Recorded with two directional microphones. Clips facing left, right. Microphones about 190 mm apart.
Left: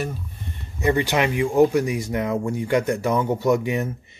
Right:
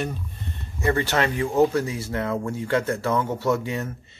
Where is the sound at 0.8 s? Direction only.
15° left (ahead or behind).